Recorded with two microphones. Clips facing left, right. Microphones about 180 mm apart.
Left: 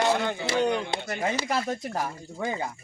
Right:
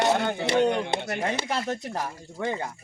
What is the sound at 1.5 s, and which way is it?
A man's voice, 5° left (ahead or behind).